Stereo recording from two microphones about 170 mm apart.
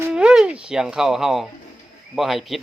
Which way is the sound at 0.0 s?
5° right (ahead or behind).